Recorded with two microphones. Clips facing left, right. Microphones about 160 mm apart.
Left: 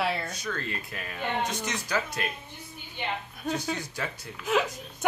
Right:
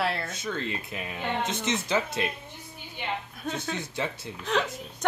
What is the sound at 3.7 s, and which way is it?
Speech, 25° right (ahead or behind).